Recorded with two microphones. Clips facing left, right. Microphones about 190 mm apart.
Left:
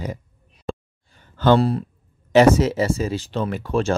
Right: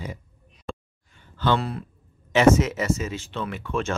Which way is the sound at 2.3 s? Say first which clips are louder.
Left 4 dB; 35° left (ahead or behind).